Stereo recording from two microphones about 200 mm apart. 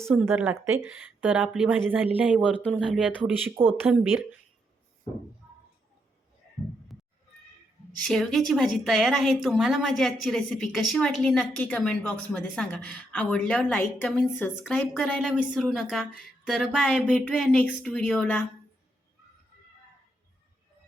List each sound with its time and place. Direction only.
0.0 s a woman's voice: 10° right (ahead or behind)
2.5 s speech: 5° left (ahead or behind)
2.7 s a woman's voice: 5° right (ahead or behind)
8.0 s a woman's voice: centre (ahead or behind)